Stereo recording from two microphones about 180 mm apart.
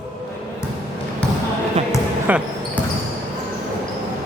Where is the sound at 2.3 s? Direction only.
10° right (ahead or behind).